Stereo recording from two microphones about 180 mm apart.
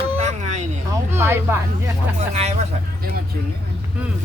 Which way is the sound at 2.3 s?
35° right (ahead or behind).